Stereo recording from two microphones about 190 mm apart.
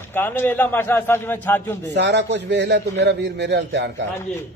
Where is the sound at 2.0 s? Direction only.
65° right (ahead or behind).